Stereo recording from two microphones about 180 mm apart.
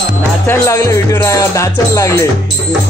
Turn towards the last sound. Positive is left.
turn(degrees=15)  # may be behind; listen again after turning